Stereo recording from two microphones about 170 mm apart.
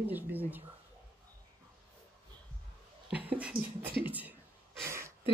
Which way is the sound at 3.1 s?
10° right (ahead or behind).